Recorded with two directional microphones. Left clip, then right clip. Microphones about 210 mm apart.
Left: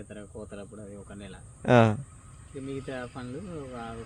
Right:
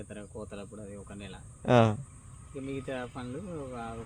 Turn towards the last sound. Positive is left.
turn(degrees=10)  # may be behind; listen again after turning